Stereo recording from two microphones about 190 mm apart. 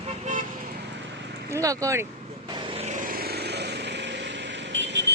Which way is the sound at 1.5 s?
15° right (ahead or behind).